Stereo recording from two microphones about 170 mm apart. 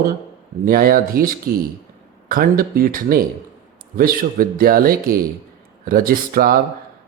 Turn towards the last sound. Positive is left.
turn(degrees=-60)  # may be behind; listen again after turning